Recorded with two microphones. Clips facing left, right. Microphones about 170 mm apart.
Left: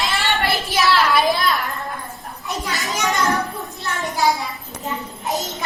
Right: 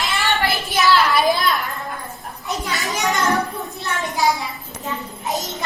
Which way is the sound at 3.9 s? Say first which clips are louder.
Even; centre (ahead or behind).